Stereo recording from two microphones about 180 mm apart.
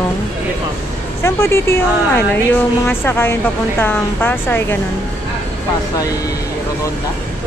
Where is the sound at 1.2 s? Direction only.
15° left (ahead or behind).